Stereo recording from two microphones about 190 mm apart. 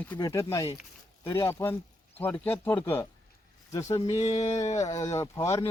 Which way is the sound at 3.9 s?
35° left (ahead or behind).